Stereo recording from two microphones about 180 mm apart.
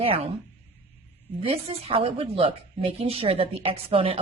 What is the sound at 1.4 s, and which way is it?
A woman's voice, 30° right (ahead or behind).